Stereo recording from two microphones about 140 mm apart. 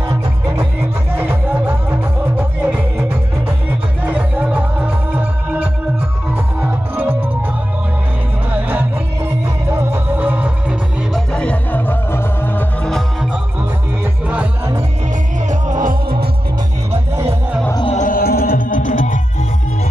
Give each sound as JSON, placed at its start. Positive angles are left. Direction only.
{"t": 1.1, "sound": "music", "side_deg": -15}
{"t": 11.3, "sound": "music", "side_deg": 10}
{"t": 12.9, "sound": "music", "side_deg": -5}
{"t": 15.4, "sound": "music", "side_deg": -60}
{"t": 17.9, "sound": "music", "side_deg": 80}